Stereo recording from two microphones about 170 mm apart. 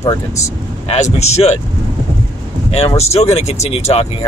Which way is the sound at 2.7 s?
40° left (ahead or behind).